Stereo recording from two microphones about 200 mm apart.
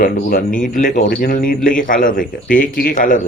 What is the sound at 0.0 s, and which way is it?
A man's voice, 40° left (ahead or behind).